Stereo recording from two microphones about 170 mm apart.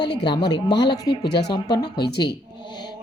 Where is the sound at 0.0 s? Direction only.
90° left.